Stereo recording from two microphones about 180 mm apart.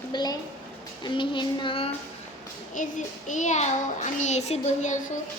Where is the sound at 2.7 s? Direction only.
45° left (ahead or behind).